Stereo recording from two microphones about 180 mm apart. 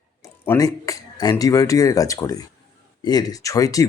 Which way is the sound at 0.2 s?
15° left (ahead or behind).